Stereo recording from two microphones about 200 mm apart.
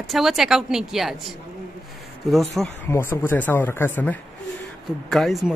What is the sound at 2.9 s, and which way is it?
Speech, 10° left (ahead or behind).